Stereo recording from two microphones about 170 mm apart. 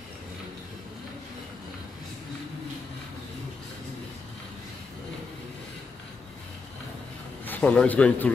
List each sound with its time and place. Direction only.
7.4 s a man's voice: 10° left (ahead or behind)